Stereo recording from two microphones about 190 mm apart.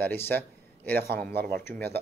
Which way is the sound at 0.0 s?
10° left (ahead or behind).